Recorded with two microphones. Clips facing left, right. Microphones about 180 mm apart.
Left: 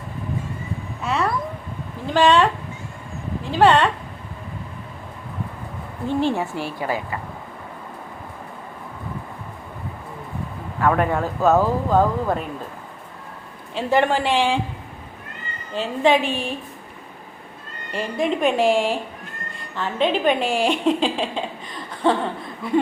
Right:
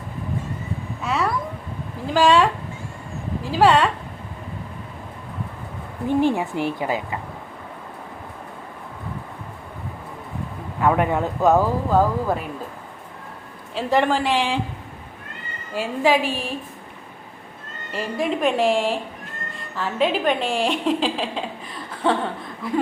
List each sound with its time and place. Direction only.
1.0 s cat: centre (ahead or behind)
2.0 s a woman's voice: centre (ahead or behind)
3.5 s a woman's voice: centre (ahead or behind)
6.1 s a woman's voice: 15° right (ahead or behind)
10.8 s a woman's voice: 15° right (ahead or behind)
11.9 s a woman's voice: 5° right (ahead or behind)
13.7 s a woman's voice: centre (ahead or behind)
15.7 s a woman's voice: 5° right (ahead or behind)
17.9 s a woman's voice: 5° right (ahead or behind)
22.6 s a woman's voice: centre (ahead or behind)